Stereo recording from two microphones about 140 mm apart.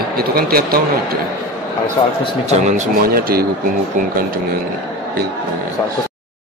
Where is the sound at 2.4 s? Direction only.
55° right (ahead or behind); by 3.5 s 90° right.